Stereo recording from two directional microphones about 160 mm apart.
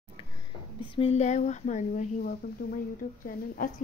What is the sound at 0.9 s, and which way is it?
Speech, 40° left (ahead or behind).